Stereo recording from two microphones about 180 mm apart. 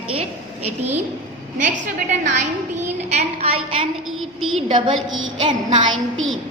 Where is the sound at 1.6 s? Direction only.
45° right (ahead or behind).